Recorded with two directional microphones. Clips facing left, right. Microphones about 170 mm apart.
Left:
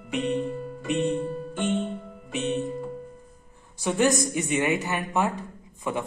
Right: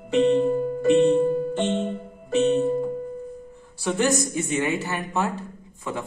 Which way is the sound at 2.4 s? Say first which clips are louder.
Right 8 dB; 40° right (ahead or behind).